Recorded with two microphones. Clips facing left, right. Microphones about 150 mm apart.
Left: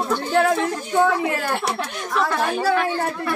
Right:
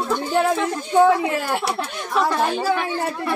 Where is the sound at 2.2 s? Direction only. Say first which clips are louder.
Right 1 dB; 15° right (ahead or behind).